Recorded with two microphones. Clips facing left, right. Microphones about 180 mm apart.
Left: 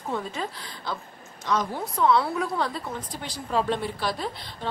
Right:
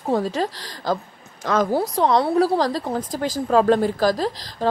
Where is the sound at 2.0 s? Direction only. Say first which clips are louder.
Right 4 dB; 35° right (ahead or behind).